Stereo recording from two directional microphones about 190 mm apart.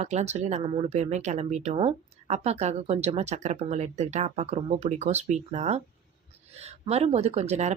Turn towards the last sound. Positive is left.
turn(degrees=-35)  # may be behind; listen again after turning